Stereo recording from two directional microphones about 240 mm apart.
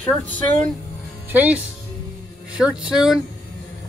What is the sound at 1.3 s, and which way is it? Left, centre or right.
Speech, centre.